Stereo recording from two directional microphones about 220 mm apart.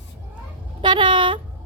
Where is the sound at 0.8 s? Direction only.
20° right (ahead or behind).